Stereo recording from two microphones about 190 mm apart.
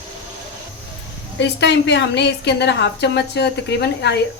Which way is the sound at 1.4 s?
70° left (ahead or behind).